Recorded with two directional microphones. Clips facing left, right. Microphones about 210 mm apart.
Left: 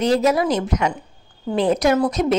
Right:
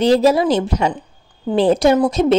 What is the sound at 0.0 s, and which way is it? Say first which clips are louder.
A woman's voice: right 4 dB; 30° right (ahead or behind).